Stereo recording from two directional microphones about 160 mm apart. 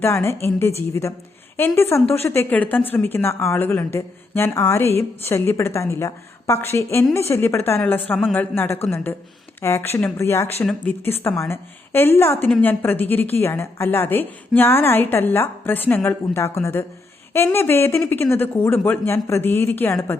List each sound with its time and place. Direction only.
0.0 s a woman's voice: 15° left (ahead or behind)